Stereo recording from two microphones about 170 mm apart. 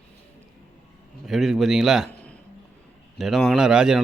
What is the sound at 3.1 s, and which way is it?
Speech, centre (ahead or behind).